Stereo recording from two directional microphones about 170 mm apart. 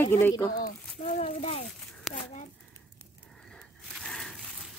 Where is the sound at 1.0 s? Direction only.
40° left (ahead or behind).